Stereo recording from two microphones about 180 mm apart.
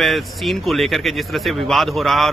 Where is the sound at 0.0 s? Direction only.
Centre (ahead or behind).